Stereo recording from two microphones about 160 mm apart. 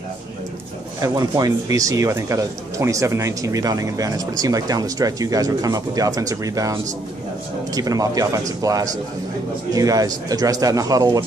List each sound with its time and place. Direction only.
1.0 s speech: 20° right (ahead or behind)